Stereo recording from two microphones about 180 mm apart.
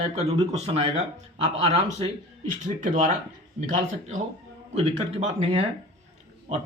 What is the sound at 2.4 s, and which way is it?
Speech, 45° right (ahead or behind).